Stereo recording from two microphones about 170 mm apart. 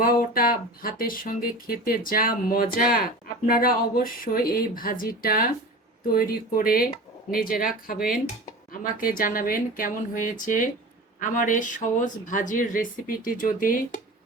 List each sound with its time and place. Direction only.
0.0 s speech: 60° left (ahead or behind)